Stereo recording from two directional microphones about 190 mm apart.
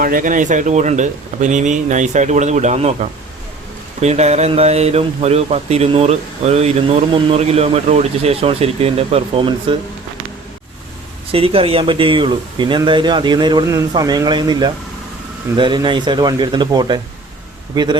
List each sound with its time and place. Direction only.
0.0 s speech: 45° right (ahead or behind); by 9.7 s 25° right (ahead or behind)
11.3 s speech: 30° right (ahead or behind)